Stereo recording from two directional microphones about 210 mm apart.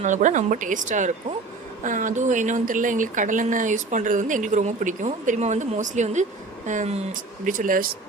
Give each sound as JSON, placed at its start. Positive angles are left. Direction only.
{"t": 0.0, "sound": "speech", "side_deg": -35}